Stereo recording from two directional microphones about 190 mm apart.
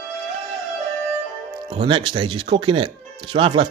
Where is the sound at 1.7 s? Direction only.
25° right (ahead or behind).